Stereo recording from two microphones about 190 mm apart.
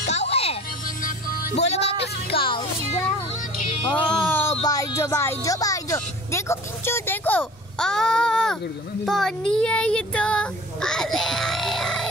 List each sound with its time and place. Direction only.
0.1 s music: 35° left (ahead or behind)
0.8 s music: 50° left (ahead or behind)
1.7 s music: 35° left (ahead or behind)
4.1 s music: 5° left (ahead or behind)
4.6 s speech: 15° left (ahead or behind)
9.0 s child singing: centre (ahead or behind)